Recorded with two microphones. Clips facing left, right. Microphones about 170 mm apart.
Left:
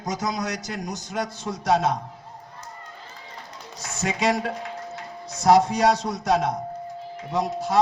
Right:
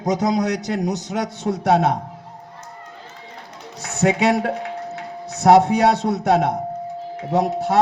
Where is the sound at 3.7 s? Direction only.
65° right (ahead or behind).